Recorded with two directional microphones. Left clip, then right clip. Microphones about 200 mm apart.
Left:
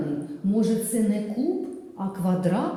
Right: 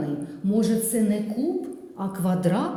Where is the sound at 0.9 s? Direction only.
35° right (ahead or behind).